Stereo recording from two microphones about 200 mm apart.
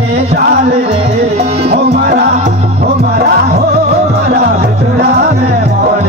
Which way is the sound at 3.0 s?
50° right (ahead or behind).